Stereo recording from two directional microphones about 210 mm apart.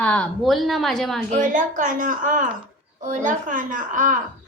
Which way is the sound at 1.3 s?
40° right (ahead or behind).